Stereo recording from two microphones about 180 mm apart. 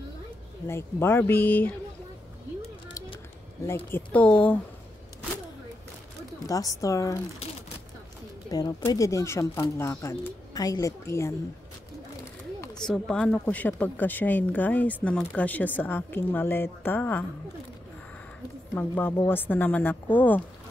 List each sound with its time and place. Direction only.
0.7 s speech: 15° left (ahead or behind)
3.6 s speech: 10° left (ahead or behind)
6.4 s speech: 20° left (ahead or behind)
8.5 s speech: 20° left (ahead or behind)
12.7 s speech: centre (ahead or behind)
18.8 s speech: 10° left (ahead or behind)